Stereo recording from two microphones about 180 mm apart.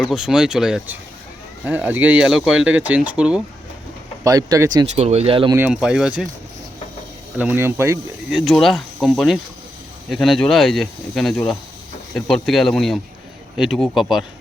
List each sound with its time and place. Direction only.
0.0 s speech: 5° right (ahead or behind)
4.2 s speech: 20° right (ahead or behind)
4.9 s speech: 35° right (ahead or behind)
5.5 s speech: 5° right (ahead or behind)
7.3 s speech: 10° right (ahead or behind)